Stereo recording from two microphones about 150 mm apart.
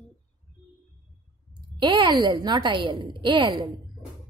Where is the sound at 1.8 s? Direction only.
30° right (ahead or behind).